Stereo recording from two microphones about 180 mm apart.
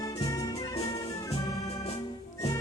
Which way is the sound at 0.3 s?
20° left (ahead or behind).